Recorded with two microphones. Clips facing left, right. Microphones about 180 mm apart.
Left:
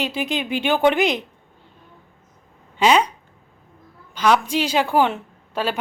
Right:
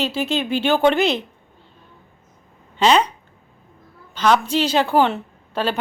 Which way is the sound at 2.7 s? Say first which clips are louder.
Right 1 dB; 10° left (ahead or behind).